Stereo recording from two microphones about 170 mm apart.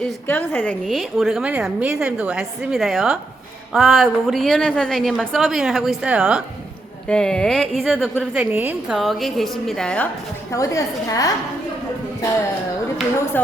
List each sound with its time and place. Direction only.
0.0 s a woman's voice: 10° left (ahead or behind)
8.3 s a woman's voice: 10° right (ahead or behind)
10.5 s a woman's voice: 20° left (ahead or behind)